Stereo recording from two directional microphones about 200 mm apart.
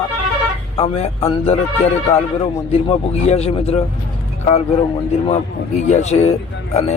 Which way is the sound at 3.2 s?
30° left (ahead or behind).